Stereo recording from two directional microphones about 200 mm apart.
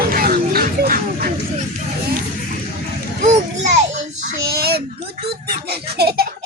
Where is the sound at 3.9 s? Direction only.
45° right (ahead or behind).